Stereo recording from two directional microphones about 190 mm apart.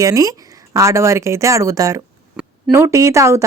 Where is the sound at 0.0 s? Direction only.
15° right (ahead or behind).